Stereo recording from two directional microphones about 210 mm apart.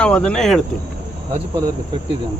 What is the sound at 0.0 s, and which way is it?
Speech, 5° left (ahead or behind).